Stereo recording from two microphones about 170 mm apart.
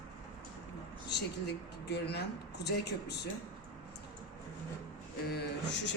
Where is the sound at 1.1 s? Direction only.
80° left.